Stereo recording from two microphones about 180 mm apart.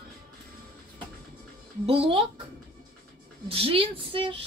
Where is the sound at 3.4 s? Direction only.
30° right (ahead or behind).